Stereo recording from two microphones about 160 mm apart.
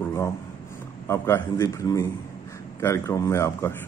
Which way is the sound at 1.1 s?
15° left (ahead or behind).